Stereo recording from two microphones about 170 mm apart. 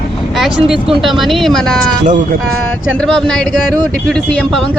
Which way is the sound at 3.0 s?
5° left (ahead or behind).